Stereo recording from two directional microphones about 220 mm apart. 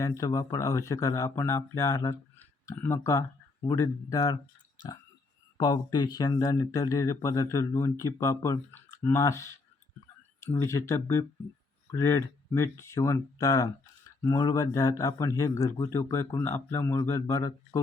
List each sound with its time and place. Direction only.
0.0 s speech: 15° left (ahead or behind)
5.5 s speech: 20° left (ahead or behind)